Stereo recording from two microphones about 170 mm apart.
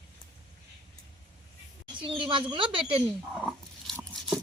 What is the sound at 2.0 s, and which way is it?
Speech, 30° right (ahead or behind).